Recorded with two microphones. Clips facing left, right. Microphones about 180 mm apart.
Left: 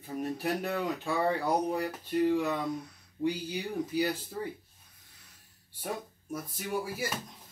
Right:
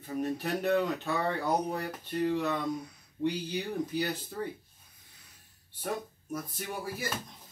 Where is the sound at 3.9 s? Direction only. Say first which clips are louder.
Left 2 dB; 5° left (ahead or behind).